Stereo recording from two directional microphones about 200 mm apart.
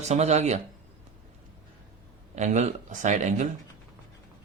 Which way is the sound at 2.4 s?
35° right (ahead or behind).